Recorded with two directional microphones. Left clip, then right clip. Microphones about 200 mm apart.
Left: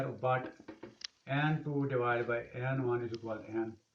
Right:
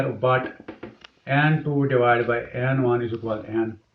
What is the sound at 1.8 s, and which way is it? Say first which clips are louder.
A man's voice: right 14 dB; 35° left (ahead or behind).